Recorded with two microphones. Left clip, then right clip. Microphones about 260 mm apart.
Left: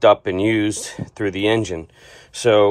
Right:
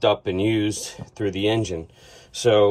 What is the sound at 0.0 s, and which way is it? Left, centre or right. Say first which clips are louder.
Speech: left 6 dB; centre.